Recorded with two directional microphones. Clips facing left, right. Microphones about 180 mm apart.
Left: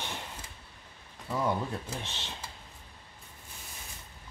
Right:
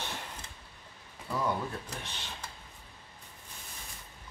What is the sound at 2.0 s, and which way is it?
Speech, 25° left (ahead or behind).